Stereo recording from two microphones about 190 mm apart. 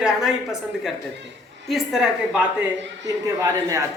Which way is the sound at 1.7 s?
Centre (ahead or behind).